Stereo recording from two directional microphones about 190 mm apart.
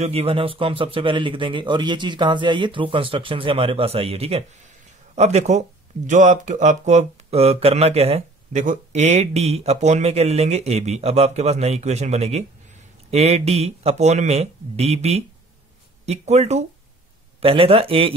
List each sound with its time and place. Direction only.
0.0 s a man's voice: 30° right (ahead or behind)